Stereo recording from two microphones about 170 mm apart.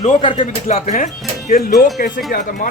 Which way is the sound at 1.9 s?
60° left (ahead or behind).